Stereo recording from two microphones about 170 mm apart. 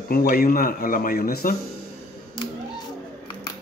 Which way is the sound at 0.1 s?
60° left (ahead or behind).